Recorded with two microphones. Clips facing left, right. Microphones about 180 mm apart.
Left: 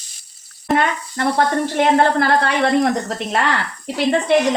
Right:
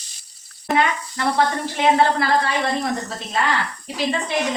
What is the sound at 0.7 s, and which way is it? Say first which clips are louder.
Speech: left 2 dB; 50° left (ahead or behind).